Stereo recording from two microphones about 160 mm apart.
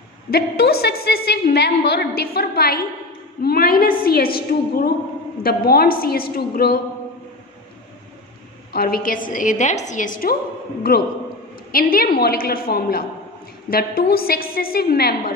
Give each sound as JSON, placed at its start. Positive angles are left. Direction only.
{"t": 0.3, "sound": "a woman's voice", "side_deg": 80}
{"t": 8.7, "sound": "a woman's voice", "side_deg": 70}
{"t": 10.9, "sound": "a woman's voice", "side_deg": 70}